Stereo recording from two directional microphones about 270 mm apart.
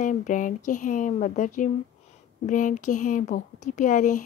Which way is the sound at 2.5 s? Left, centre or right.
Left.